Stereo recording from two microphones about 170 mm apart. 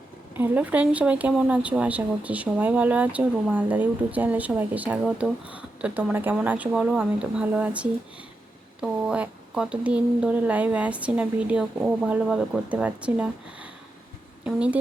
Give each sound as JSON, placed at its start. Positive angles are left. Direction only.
{"t": 0.3, "sound": "speech", "side_deg": -10}